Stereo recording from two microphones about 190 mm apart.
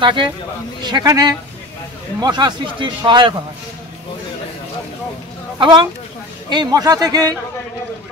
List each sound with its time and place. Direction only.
0.0 s speech: 25° right (ahead or behind)
5.6 s speech: 25° right (ahead or behind)